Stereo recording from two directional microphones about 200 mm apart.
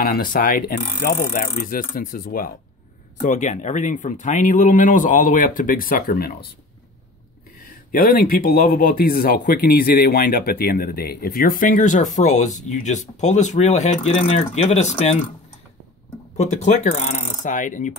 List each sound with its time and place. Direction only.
0.0 s speech: 45° left (ahead or behind)
7.9 s speech: 45° left (ahead or behind)
16.3 s speech: 35° left (ahead or behind)